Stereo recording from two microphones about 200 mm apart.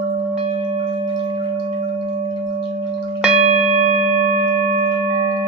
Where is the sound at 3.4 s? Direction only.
30° right (ahead or behind).